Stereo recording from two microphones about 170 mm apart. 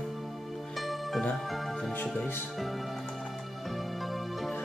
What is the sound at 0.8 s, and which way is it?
Music, centre (ahead or behind).